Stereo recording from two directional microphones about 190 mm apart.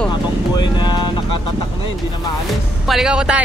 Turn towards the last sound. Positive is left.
turn(degrees=-5)  # may be behind; listen again after turning